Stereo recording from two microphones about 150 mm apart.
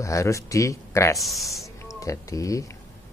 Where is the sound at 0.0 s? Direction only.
20° left (ahead or behind).